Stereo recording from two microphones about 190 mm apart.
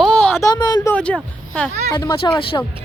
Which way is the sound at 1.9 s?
20° left (ahead or behind).